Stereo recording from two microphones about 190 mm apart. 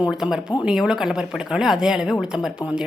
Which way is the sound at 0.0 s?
5° right (ahead or behind).